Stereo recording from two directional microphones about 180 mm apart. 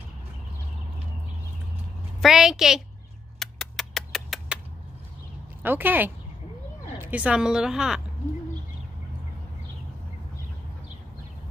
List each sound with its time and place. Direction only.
2.2 s a woman's voice: centre (ahead or behind)
3.3 s a sound: centre (ahead or behind)
5.6 s a woman's voice: 10° right (ahead or behind)